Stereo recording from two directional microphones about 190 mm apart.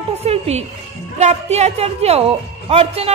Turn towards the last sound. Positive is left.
turn(degrees=-30)  # may be behind; listen again after turning